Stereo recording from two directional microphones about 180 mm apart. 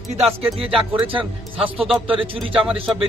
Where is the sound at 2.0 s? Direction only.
30° right (ahead or behind).